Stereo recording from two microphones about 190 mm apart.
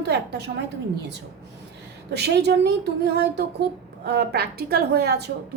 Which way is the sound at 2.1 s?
60° right (ahead or behind).